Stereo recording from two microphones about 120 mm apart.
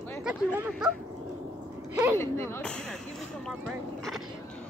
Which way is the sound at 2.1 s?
20° left (ahead or behind).